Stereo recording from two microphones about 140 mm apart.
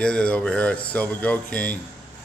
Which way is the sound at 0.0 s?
10° left (ahead or behind).